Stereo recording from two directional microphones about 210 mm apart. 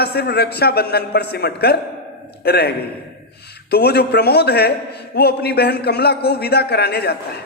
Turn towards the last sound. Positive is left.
turn(degrees=50)  # may be behind; listen again after turning